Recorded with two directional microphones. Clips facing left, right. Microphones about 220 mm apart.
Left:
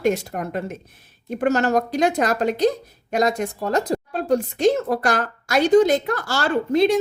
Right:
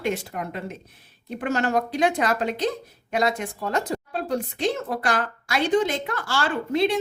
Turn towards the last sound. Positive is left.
turn(degrees=40)  # may be behind; listen again after turning